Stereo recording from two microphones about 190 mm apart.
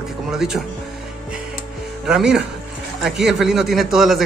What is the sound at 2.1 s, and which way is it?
A man's voice, 5° right (ahead or behind).